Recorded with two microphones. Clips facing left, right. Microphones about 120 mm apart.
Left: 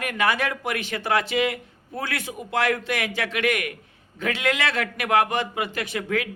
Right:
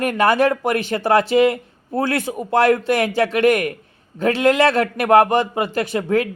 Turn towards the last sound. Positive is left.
turn(degrees=-40)  # may be behind; listen again after turning